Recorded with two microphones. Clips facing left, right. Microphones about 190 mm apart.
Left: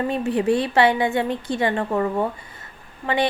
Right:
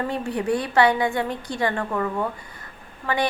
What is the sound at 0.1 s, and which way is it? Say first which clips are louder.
A woman's voice: left 4 dB; 25° left (ahead or behind).